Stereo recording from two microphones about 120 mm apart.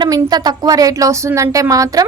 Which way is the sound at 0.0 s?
35° right (ahead or behind).